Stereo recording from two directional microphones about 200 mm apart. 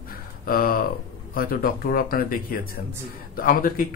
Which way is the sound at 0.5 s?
45° left (ahead or behind).